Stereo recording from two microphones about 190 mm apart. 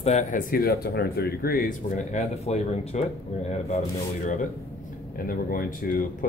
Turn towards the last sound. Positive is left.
turn(degrees=50)  # may be behind; listen again after turning